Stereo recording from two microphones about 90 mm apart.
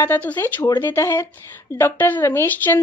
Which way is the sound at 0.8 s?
30° left (ahead or behind).